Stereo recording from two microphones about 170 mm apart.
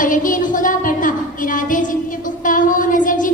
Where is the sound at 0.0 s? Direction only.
50° left (ahead or behind).